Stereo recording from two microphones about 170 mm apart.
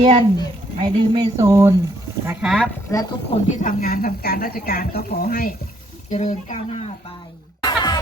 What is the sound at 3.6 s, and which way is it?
Speech, 55° left (ahead or behind).